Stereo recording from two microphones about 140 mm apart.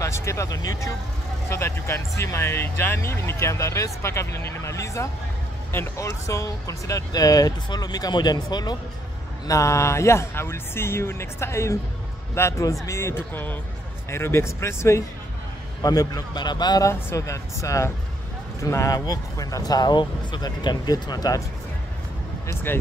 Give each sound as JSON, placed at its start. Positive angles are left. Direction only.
{"t": 0.0, "sound": "speech", "side_deg": 20}
{"t": 22.5, "sound": "speech", "side_deg": 15}